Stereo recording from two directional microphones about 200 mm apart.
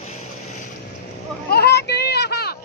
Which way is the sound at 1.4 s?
55° left (ahead or behind).